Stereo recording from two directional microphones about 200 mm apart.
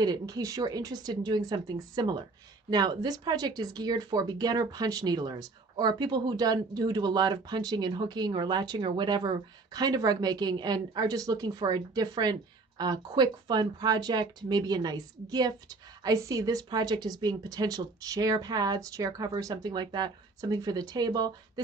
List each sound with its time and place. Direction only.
0.0 s speech: 20° right (ahead or behind)